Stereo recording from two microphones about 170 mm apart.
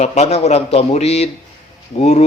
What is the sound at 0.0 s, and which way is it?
Speech, 40° left (ahead or behind).